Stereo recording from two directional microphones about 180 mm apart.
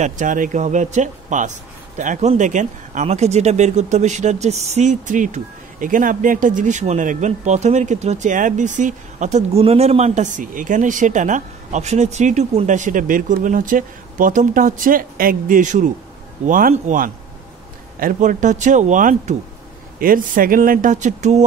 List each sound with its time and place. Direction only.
0.0 s speech: 45° right (ahead or behind)